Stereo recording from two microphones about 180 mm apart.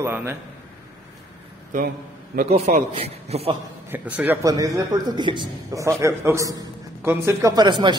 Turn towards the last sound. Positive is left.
turn(degrees=-25)  # may be behind; listen again after turning